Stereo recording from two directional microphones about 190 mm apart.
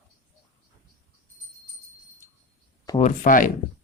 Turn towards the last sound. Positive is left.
turn(degrees=45)  # may be behind; listen again after turning